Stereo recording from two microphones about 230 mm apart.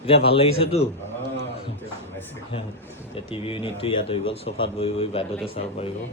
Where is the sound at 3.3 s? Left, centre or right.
Left.